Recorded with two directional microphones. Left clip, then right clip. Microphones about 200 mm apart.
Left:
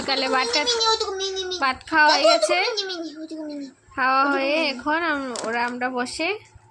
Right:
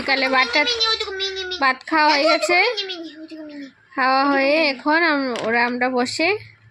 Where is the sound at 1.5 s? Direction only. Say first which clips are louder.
Right 2 dB; 25° right (ahead or behind).